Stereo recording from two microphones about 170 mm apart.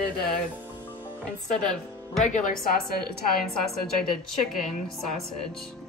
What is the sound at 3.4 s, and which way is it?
Speech, centre (ahead or behind).